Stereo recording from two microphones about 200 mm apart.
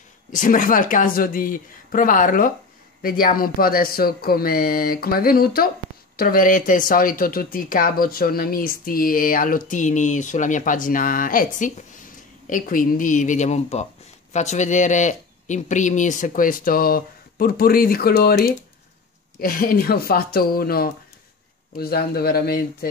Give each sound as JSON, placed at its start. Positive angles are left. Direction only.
{"t": 0.3, "sound": "speech", "side_deg": 40}